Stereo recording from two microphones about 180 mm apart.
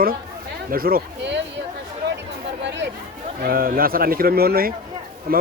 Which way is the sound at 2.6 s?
70° right (ahead or behind).